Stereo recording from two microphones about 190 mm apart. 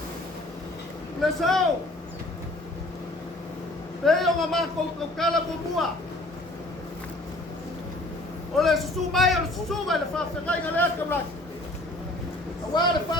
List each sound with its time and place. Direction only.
1.2 s a man's voice: centre (ahead or behind)
4.0 s a man's voice: centre (ahead or behind)
8.5 s a man's voice: centre (ahead or behind)
12.7 s speech: 25° left (ahead or behind)